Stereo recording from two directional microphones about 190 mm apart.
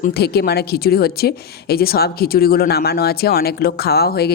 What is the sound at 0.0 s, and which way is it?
A woman's voice, 55° left (ahead or behind).